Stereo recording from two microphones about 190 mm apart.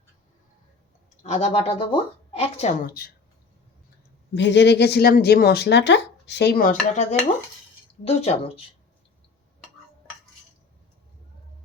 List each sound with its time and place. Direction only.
1.2 s a woman's voice: 35° left (ahead or behind)
2.8 s a woman's voice: 55° left (ahead or behind)
4.4 s a woman's voice: 70° left (ahead or behind); by 8.6 s 30° left (ahead or behind)